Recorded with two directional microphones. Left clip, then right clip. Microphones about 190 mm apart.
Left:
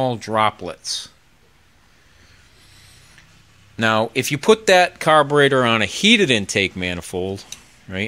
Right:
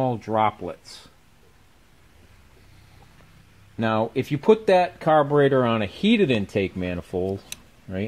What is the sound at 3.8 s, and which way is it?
Speech, 15° left (ahead or behind).